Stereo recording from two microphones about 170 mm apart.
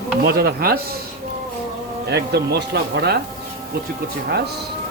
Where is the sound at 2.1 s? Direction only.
75° right (ahead or behind).